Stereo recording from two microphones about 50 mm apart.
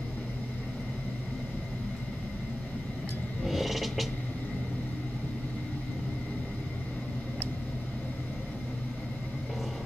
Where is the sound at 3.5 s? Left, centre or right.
Centre.